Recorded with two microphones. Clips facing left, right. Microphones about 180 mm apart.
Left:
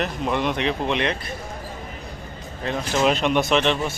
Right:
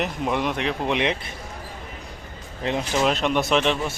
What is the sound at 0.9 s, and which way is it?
Speech, 15° right (ahead or behind).